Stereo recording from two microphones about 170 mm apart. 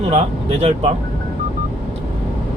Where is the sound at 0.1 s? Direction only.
35° right (ahead or behind).